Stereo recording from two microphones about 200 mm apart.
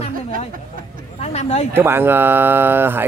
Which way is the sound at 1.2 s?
35° left (ahead or behind).